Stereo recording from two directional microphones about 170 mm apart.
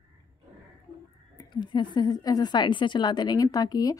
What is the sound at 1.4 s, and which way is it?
A woman's voice, 25° left (ahead or behind).